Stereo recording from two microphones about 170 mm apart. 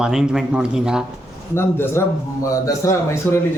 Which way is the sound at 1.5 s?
15° left (ahead or behind).